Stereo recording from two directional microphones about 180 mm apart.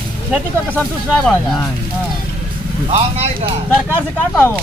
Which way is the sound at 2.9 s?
35° right (ahead or behind).